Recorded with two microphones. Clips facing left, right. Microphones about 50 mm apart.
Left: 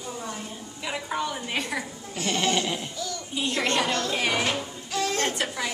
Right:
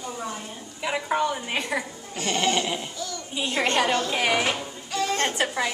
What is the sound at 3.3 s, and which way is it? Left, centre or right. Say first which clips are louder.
Speech: right 2 dB; centre.